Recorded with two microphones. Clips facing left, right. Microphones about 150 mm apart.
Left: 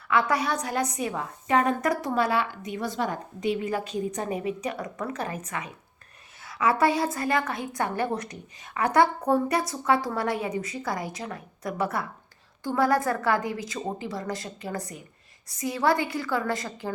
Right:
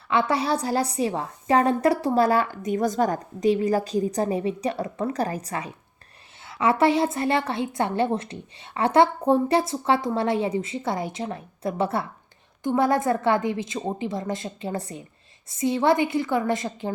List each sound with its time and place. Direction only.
0.1 s a woman's voice: 25° right (ahead or behind)